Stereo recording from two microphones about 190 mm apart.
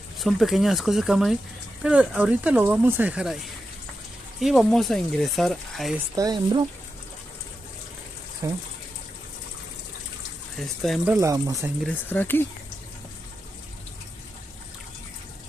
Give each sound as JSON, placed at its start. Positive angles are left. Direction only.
{"t": 0.2, "sound": "speech", "side_deg": 0}
{"t": 6.1, "sound": "speech", "side_deg": -20}
{"t": 8.4, "sound": "speech", "side_deg": -15}
{"t": 10.6, "sound": "speech", "side_deg": 0}
{"t": 11.1, "sound": "speech", "side_deg": -15}
{"t": 11.8, "sound": "speech", "side_deg": 10}